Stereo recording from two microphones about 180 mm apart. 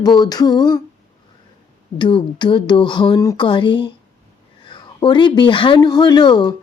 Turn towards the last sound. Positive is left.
turn(degrees=25)  # may be behind; listen again after turning